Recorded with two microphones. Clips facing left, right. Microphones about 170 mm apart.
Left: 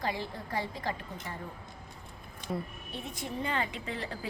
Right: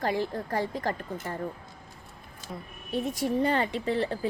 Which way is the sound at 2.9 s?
40° right (ahead or behind).